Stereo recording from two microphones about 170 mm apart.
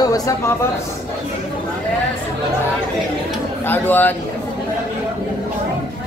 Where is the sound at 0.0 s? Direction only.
20° left (ahead or behind).